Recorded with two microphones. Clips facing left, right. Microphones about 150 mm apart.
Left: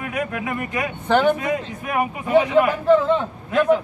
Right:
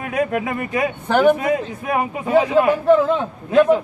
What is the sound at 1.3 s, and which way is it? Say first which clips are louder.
Speech: right 4 dB; 30° right (ahead or behind).